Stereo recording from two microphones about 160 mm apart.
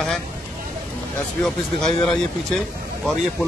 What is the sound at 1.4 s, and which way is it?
Speech, 5° left (ahead or behind).